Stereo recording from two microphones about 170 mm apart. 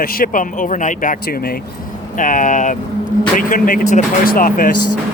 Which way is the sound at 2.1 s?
50° left (ahead or behind).